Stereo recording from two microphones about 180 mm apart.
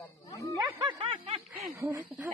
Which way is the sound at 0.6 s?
20° right (ahead or behind).